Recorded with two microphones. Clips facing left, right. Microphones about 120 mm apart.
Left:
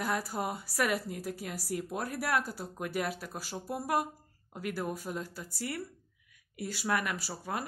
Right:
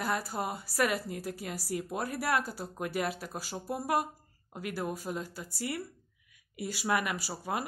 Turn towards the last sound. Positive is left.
turn(degrees=-10)  # may be behind; listen again after turning